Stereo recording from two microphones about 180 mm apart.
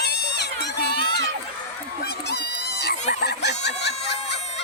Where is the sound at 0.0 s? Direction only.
70° left (ahead or behind).